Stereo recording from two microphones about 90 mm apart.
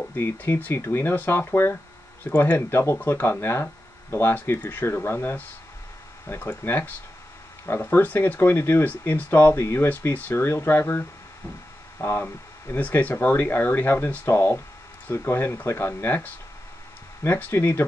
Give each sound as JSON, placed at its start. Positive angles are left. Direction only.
{"t": 0.0, "sound": "speech", "side_deg": 20}